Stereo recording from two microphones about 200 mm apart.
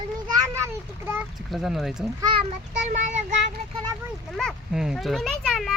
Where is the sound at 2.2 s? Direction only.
20° right (ahead or behind).